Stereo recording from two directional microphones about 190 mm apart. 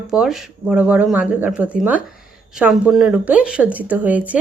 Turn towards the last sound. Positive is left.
turn(degrees=-10)  # may be behind; listen again after turning